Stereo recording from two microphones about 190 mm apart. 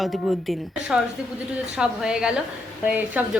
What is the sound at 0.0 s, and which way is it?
A woman's voice, centre (ahead or behind).